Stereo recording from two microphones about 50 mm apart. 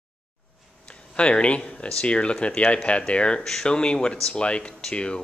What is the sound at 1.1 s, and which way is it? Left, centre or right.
Speech, left.